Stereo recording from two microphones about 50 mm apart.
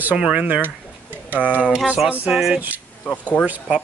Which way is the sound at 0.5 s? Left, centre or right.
Right.